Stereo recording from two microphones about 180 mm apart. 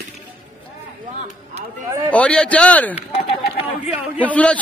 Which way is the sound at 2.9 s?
30° left (ahead or behind).